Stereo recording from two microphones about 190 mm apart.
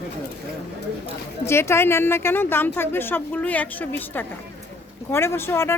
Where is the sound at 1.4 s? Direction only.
15° left (ahead or behind).